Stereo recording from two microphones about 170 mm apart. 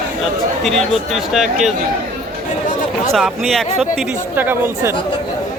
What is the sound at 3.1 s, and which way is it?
Speech, centre (ahead or behind).